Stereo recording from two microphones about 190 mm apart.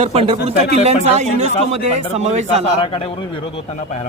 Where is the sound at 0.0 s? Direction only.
30° right (ahead or behind).